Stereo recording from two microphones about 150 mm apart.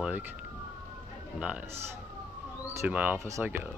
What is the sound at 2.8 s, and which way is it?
Speech, 10° right (ahead or behind).